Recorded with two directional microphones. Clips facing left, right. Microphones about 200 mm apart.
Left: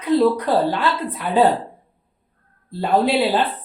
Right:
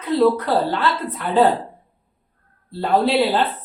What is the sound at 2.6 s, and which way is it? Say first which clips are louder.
Speech: even; 15° left (ahead or behind).